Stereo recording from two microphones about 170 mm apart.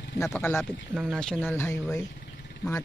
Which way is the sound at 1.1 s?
5° left (ahead or behind).